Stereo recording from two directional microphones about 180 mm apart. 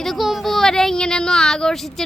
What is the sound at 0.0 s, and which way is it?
Speech, centre (ahead or behind).